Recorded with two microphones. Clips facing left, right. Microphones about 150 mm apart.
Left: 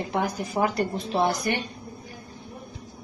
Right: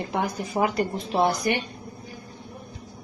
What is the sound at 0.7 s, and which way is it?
Speech, centre (ahead or behind).